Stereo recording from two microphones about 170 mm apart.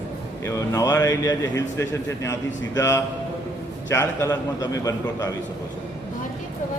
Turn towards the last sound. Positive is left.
turn(degrees=20)  # may be behind; listen again after turning